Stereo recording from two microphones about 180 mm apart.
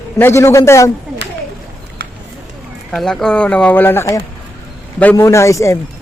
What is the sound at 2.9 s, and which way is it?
Speech, 5° left (ahead or behind).